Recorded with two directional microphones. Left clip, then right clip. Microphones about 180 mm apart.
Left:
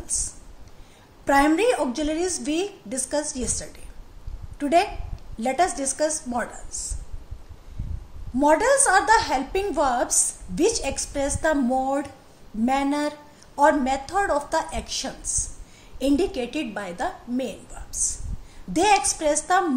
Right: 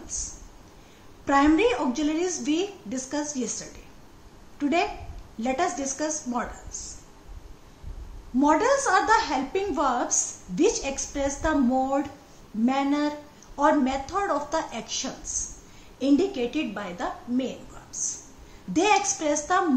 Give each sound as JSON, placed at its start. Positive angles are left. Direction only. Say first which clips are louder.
{"t": 0.0, "sound": "a woman's voice", "louder": "left 4 dB", "side_deg": 60}
{"t": 8.4, "sound": "a woman's voice", "louder": "left 3 dB", "side_deg": 55}